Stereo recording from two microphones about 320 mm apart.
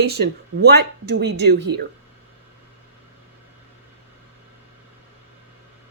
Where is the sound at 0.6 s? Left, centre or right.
Right.